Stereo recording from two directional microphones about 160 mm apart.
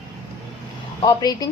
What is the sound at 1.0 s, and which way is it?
Speech, 25° left (ahead or behind).